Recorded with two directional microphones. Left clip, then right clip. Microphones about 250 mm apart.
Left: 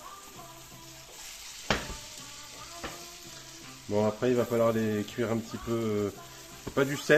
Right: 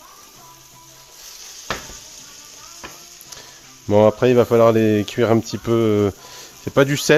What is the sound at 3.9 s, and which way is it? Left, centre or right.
Speech, right.